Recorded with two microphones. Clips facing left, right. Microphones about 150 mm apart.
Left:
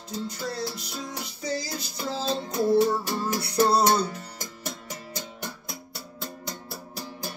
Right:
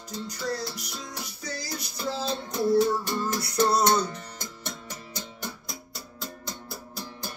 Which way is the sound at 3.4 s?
30° left (ahead or behind).